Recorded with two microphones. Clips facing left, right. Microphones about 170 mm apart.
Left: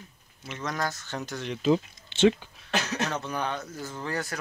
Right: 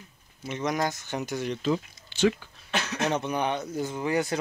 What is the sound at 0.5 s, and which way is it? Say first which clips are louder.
Speech: right 4 dB; 20° right (ahead or behind).